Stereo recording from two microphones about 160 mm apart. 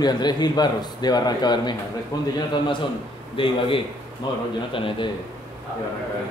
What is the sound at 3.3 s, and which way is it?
A man's voice, 35° left (ahead or behind).